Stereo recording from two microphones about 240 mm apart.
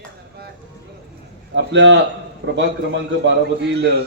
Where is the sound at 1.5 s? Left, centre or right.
Right.